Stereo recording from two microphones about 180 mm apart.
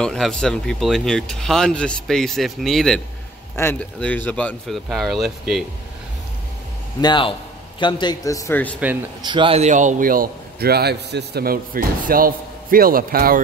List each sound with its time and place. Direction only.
0.0 s speech: 5° left (ahead or behind)
7.0 s a man's voice: 25° left (ahead or behind)
9.2 s a man's voice: 25° right (ahead or behind); by 13.4 s 55° right (ahead or behind)